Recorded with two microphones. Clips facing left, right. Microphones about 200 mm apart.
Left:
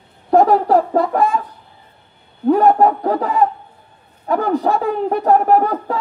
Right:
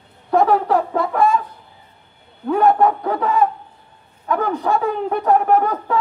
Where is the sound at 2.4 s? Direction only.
35° left (ahead or behind).